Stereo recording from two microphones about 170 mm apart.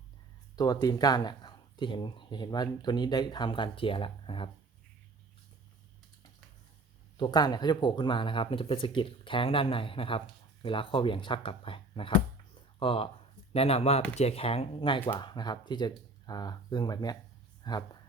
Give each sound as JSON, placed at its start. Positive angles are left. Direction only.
{"t": 0.5, "sound": "speech", "side_deg": 20}
{"t": 7.2, "sound": "speech", "side_deg": 25}